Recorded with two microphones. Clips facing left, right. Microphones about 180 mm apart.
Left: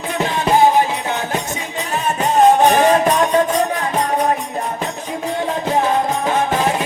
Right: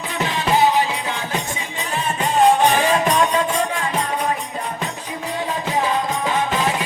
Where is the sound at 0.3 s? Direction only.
50° left (ahead or behind).